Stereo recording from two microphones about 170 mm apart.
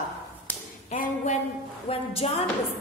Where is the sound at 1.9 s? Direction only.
35° left (ahead or behind).